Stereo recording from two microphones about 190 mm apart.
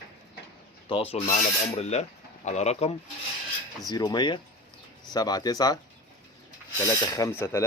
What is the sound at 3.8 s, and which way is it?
Speech, 20° left (ahead or behind).